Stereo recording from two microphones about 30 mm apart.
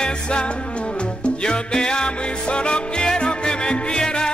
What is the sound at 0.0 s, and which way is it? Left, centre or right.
Music, left.